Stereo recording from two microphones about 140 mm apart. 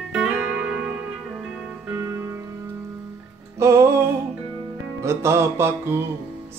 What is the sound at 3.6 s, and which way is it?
Music, 20° right (ahead or behind).